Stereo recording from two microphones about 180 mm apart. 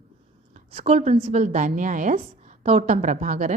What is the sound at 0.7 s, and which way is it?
A woman's voice, 35° right (ahead or behind).